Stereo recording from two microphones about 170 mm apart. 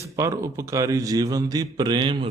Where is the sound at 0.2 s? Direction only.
20° right (ahead or behind).